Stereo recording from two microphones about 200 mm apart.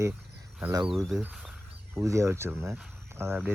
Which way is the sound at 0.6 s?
10° right (ahead or behind).